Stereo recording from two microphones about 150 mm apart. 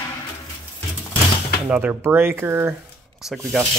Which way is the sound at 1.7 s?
10° right (ahead or behind).